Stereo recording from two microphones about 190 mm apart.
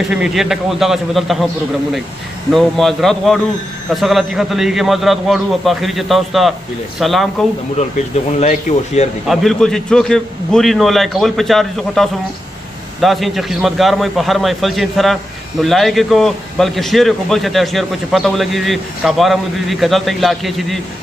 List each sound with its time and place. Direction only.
0.1 s a man's voice: centre (ahead or behind)
2.5 s a man's voice: centre (ahead or behind)
8.3 s speech: 35° left (ahead or behind)
9.3 s a man's voice: centre (ahead or behind)